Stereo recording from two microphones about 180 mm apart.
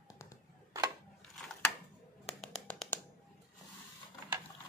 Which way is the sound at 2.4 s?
5° left (ahead or behind).